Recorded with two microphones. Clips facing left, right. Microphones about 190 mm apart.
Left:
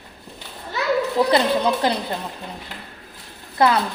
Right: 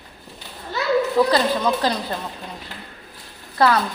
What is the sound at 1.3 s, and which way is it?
Speech, 20° left (ahead or behind).